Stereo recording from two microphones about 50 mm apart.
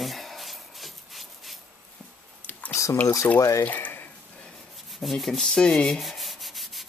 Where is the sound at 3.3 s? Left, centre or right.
Left.